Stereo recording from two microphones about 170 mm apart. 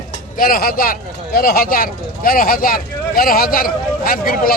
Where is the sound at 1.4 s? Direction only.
60° left (ahead or behind).